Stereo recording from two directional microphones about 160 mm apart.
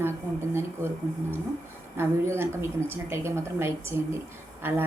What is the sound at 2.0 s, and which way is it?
A woman's voice, 15° right (ahead or behind).